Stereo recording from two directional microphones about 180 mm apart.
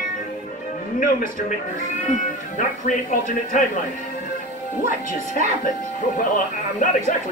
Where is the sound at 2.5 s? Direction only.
45° left (ahead or behind).